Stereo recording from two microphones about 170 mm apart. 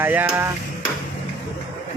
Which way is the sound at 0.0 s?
10° right (ahead or behind).